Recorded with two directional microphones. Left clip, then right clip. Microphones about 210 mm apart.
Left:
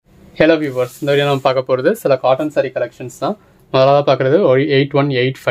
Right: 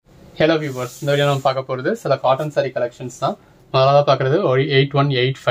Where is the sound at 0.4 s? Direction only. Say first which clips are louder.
Left 5 dB; 50° left (ahead or behind).